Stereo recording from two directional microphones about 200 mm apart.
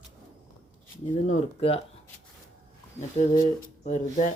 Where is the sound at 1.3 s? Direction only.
30° left (ahead or behind).